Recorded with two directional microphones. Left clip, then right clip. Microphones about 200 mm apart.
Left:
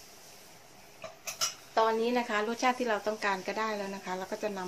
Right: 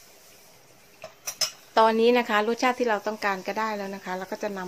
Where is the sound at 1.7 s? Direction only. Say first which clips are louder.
Right 9 dB; 50° right (ahead or behind).